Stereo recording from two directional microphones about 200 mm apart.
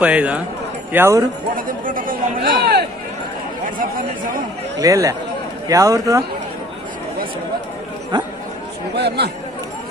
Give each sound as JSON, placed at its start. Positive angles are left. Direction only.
{"t": 0.0, "sound": "a man's voice", "side_deg": -5}
{"t": 1.5, "sound": "speech", "side_deg": -45}
{"t": 4.7, "sound": "a man's voice", "side_deg": -15}
{"t": 8.9, "sound": "speech", "side_deg": -55}